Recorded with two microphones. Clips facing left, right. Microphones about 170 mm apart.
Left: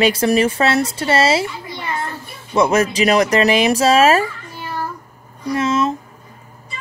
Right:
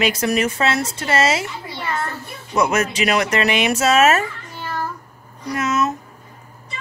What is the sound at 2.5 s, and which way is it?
Speech, 30° left (ahead or behind).